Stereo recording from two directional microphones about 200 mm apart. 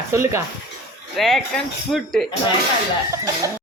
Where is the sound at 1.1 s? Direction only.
Centre (ahead or behind).